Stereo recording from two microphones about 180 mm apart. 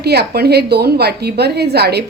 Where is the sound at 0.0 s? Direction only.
65° right (ahead or behind).